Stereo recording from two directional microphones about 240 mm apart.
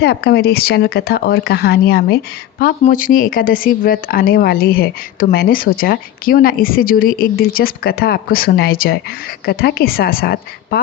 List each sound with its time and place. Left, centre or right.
0.0 s speech: left